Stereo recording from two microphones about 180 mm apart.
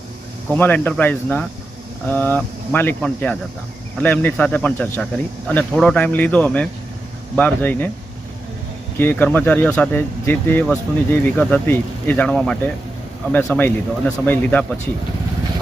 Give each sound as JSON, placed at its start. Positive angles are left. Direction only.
{"t": 0.5, "sound": "speech", "side_deg": 10}
{"t": 9.0, "sound": "speech", "side_deg": 10}